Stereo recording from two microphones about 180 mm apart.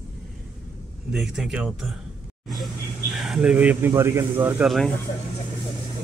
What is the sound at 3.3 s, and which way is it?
Speech, 5° right (ahead or behind).